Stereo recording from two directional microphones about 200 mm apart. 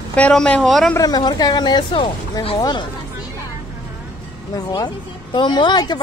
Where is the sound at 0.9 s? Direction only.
20° left (ahead or behind).